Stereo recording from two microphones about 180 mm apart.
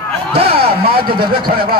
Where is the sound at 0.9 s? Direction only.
55° right (ahead or behind).